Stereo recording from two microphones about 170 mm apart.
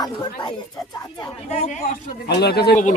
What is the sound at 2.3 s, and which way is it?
Speech, 70° left (ahead or behind).